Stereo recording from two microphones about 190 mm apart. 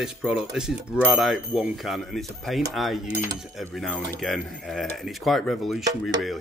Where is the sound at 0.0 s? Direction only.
5° right (ahead or behind).